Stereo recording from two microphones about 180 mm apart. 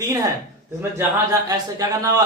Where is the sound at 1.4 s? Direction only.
20° right (ahead or behind).